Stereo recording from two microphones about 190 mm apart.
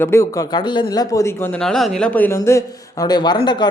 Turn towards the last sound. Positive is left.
turn(degrees=25)  # may be behind; listen again after turning